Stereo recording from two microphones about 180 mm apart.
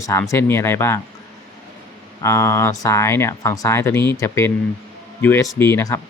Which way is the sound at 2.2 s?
15° left (ahead or behind).